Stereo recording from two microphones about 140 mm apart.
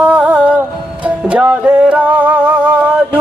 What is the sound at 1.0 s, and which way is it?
Music, 10° right (ahead or behind).